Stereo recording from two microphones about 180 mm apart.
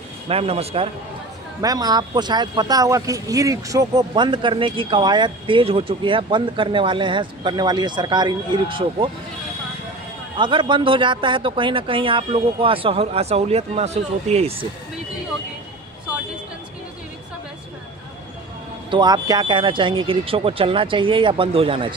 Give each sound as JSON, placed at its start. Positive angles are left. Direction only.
{"t": 0.3, "sound": "speech", "side_deg": -35}
{"t": 1.6, "sound": "speech", "side_deg": -20}
{"t": 10.3, "sound": "speech", "side_deg": -25}
{"t": 18.9, "sound": "speech", "side_deg": -25}